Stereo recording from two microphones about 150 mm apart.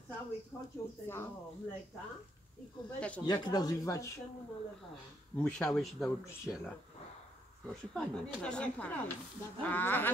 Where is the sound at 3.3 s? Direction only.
25° left (ahead or behind).